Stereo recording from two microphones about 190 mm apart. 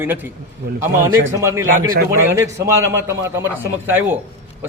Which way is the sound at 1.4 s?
15° right (ahead or behind).